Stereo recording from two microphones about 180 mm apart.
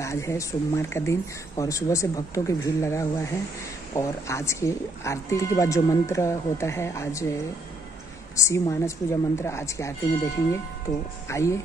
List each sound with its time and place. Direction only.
0.0 s speech: 15° left (ahead or behind)
8.4 s speech: 15° left (ahead or behind)